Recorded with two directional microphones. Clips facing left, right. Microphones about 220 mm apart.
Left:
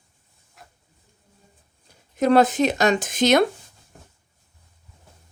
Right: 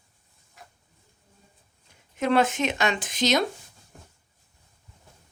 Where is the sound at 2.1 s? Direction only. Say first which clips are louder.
Left 6 dB; 40° left (ahead or behind); by 3.4 s 55° left (ahead or behind).